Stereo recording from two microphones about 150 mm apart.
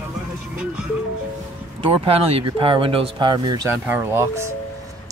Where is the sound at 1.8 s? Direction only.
40° right (ahead or behind).